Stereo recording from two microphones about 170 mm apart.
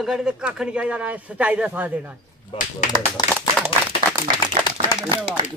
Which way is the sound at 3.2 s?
25° left (ahead or behind).